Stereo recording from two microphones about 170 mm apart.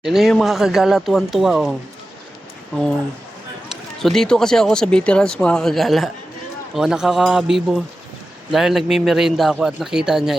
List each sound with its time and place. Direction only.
0.0 s speech: centre (ahead or behind)
4.0 s speech: centre (ahead or behind)
8.5 s speech: centre (ahead or behind)